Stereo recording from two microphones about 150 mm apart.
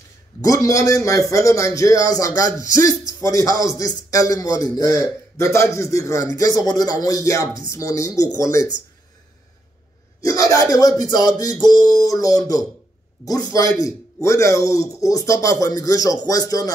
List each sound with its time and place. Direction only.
0.4 s speech: 20° left (ahead or behind)
10.2 s speech: 20° left (ahead or behind)